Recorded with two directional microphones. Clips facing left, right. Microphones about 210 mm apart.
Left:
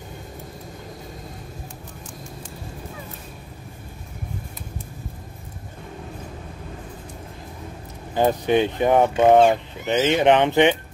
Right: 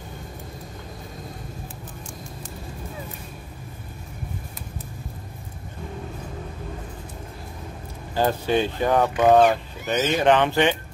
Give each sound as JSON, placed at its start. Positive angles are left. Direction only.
{"t": 8.1, "sound": "speech", "side_deg": 20}